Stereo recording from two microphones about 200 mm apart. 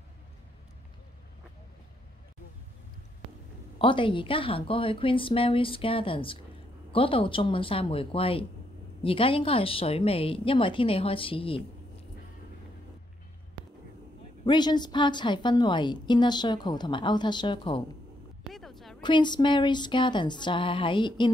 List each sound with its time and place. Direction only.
3.7 s a woman's voice: 25° left (ahead or behind)
14.4 s a woman's voice: 20° left (ahead or behind)
18.5 s a sound: centre (ahead or behind)
19.0 s a woman's voice: 20° left (ahead or behind)